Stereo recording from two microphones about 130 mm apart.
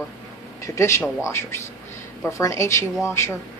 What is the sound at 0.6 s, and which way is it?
Speech, 20° left (ahead or behind).